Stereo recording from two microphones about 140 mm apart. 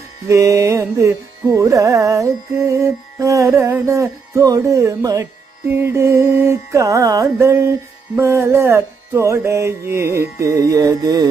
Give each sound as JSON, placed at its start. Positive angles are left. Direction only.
{"t": 0.3, "sound": "carnatic music", "side_deg": -20}